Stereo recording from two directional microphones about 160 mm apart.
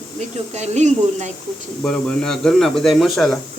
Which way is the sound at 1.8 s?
5° left (ahead or behind).